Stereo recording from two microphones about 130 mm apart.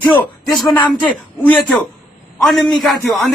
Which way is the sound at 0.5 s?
Centre (ahead or behind).